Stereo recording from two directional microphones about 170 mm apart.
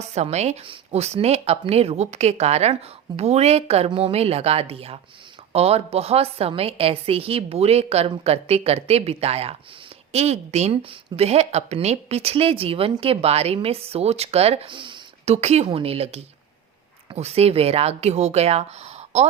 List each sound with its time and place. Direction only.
0.0 s a woman's voice: 40° right (ahead or behind)